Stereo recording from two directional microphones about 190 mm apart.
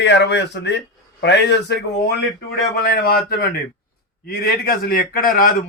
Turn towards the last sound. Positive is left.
turn(degrees=45)  # may be behind; listen again after turning